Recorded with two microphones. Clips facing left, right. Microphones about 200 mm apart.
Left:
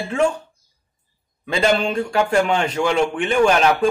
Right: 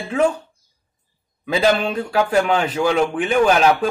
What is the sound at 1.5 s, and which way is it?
A man's voice, 5° right (ahead or behind).